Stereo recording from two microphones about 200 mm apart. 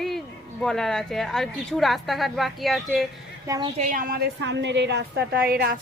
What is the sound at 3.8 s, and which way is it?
A woman's voice, 40° right (ahead or behind).